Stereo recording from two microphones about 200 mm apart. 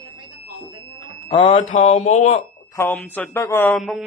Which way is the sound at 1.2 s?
25° left (ahead or behind).